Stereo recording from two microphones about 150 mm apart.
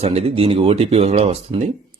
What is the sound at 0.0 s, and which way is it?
Speech, 45° right (ahead or behind).